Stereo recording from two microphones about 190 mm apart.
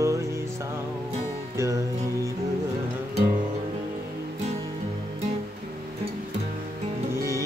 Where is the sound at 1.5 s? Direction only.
15° right (ahead or behind).